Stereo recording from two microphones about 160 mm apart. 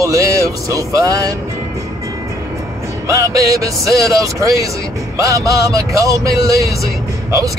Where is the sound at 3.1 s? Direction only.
20° right (ahead or behind).